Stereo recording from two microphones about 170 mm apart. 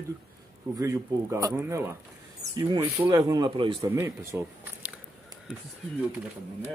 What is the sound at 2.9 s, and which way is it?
Speech, 10° right (ahead or behind).